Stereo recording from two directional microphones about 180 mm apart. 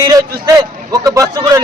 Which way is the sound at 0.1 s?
20° right (ahead or behind).